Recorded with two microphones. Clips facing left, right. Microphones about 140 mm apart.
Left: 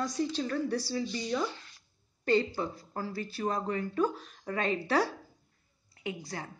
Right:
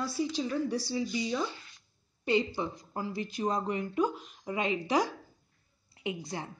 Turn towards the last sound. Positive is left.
turn(degrees=-20)  # may be behind; listen again after turning